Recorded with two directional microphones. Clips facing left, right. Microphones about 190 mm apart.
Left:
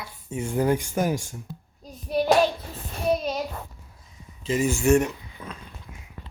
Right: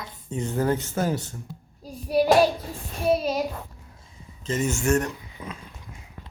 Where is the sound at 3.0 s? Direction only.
5° right (ahead or behind).